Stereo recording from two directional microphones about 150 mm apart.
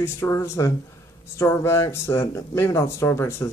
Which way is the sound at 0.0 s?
20° left (ahead or behind).